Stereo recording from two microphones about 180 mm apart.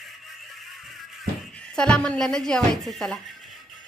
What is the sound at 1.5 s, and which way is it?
A woman's voice, 5° left (ahead or behind).